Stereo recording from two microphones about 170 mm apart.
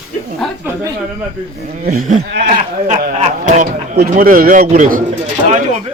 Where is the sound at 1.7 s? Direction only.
55° right (ahead or behind).